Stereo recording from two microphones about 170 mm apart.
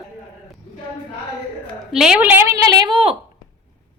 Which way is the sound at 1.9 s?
5° right (ahead or behind).